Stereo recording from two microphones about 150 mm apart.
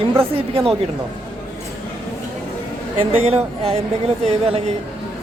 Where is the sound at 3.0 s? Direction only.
40° right (ahead or behind).